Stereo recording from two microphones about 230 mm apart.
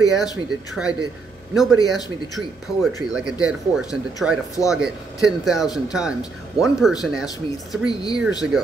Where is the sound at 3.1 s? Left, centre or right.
Centre.